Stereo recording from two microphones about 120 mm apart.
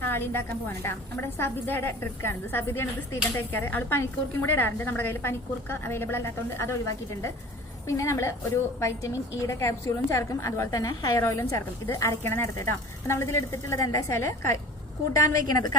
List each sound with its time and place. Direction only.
0.0 s a woman's voice: 20° left (ahead or behind)
7.9 s a woman's voice: 25° left (ahead or behind)